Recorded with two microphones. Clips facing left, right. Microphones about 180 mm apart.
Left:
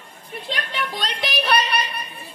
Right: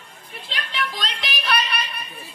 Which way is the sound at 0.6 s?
50° left (ahead or behind).